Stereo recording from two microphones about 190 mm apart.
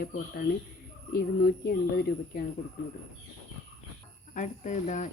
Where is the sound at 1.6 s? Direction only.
50° left (ahead or behind).